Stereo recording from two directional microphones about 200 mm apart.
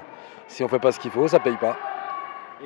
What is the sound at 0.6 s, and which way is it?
Speech, 15° left (ahead or behind).